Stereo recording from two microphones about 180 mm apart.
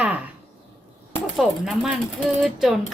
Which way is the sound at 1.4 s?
Centre (ahead or behind).